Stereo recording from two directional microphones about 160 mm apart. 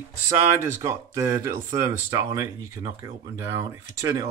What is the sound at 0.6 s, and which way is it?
Speech, 15° right (ahead or behind).